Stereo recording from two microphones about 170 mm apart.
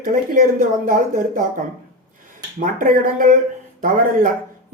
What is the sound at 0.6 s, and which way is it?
Speech, 50° right (ahead or behind).